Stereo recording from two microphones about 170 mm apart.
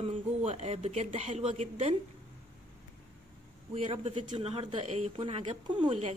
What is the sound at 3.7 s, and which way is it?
A woman's voice, 35° right (ahead or behind).